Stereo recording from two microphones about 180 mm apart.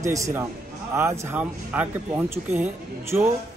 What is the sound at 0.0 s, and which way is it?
Speech, 15° right (ahead or behind).